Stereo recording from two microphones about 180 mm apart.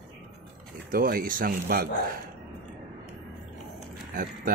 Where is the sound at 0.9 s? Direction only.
55° right (ahead or behind).